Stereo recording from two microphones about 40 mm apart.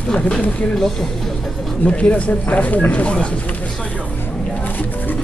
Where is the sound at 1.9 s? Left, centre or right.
Left.